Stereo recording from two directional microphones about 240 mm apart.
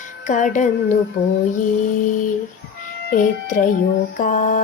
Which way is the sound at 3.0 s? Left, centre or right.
Left.